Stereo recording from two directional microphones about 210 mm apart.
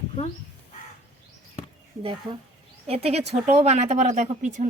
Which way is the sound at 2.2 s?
25° right (ahead or behind).